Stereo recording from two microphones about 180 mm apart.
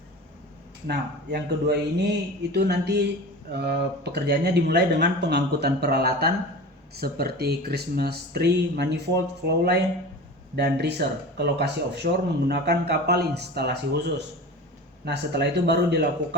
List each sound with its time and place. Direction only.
0.9 s speech: 65° right (ahead or behind)
12.0 s speech: 55° right (ahead or behind)